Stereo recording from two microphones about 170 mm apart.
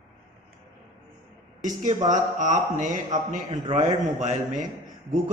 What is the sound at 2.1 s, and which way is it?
A man's voice, 45° right (ahead or behind).